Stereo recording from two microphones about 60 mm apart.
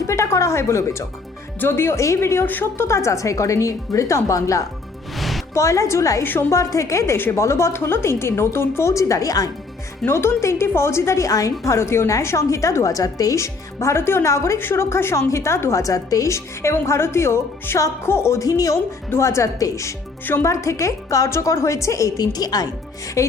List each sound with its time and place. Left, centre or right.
0.1 s music: left
1.6 s a woman's voice: left
2.5 s a woman's voice: left
2.8 s a woman's voice: left
10.1 s a woman's voice: left
11.3 s a woman's voice: left
13.4 s a woman's voice: left
14.6 s a woman's voice: left
15.8 s a woman's voice: left
18.3 s speech: left
19.1 s a woman's voice: left
21.2 s a woman's voice: left
23.2 s a woman's voice: left